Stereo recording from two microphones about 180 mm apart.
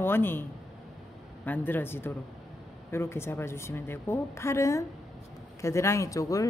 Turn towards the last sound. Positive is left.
turn(degrees=20)  # may be behind; listen again after turning